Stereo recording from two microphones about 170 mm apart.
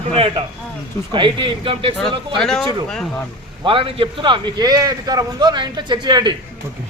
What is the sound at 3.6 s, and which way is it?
A man's voice, 30° right (ahead or behind).